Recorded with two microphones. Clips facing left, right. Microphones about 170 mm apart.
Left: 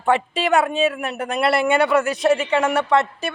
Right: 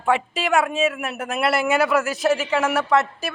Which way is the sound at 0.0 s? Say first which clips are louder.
Left 2 dB; centre (ahead or behind).